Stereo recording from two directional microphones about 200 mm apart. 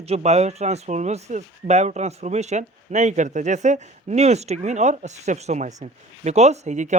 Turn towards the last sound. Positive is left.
turn(degrees=-35)  # may be behind; listen again after turning